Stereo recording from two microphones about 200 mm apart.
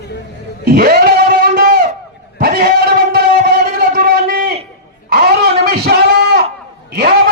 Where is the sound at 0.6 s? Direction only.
50° right (ahead or behind).